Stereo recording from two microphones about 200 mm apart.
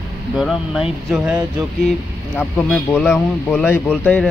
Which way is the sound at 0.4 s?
Centre (ahead or behind).